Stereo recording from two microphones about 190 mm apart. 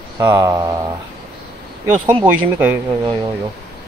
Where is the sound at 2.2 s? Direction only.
10° right (ahead or behind).